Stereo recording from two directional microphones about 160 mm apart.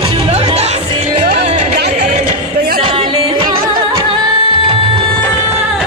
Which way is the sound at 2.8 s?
30° right (ahead or behind).